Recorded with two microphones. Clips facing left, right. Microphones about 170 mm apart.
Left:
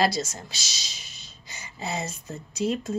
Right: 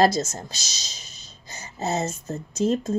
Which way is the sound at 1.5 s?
45° right (ahead or behind).